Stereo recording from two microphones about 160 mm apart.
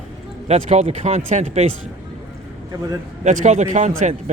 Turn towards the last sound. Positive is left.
turn(degrees=-50)  # may be behind; listen again after turning